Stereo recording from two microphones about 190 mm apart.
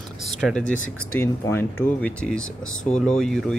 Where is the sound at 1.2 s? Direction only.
10° left (ahead or behind).